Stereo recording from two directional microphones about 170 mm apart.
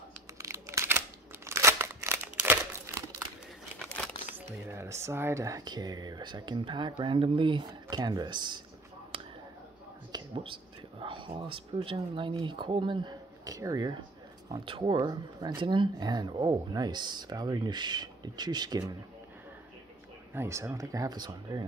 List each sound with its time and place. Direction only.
0.4 s scissors: 15° right (ahead or behind)
4.5 s speech: 15° right (ahead or behind)
10.1 s speech: 30° right (ahead or behind)
20.3 s speech: 15° right (ahead or behind)